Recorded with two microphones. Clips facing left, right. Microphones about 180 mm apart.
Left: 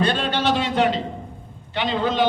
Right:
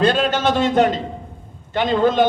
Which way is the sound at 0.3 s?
45° right (ahead or behind).